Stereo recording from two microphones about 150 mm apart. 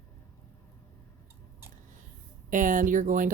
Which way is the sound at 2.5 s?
60° right (ahead or behind).